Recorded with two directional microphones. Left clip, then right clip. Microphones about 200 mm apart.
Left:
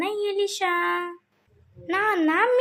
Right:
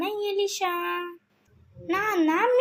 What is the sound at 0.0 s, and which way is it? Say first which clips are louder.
Child singing: left 2 dB; 15° left (ahead or behind).